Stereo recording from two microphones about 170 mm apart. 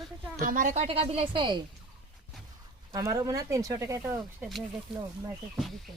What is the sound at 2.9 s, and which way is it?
Speech, 20° right (ahead or behind).